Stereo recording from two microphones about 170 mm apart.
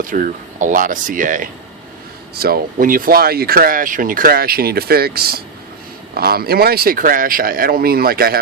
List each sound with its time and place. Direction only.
0.0 s speech: 55° right (ahead or behind)
2.3 s speech: 65° right (ahead or behind)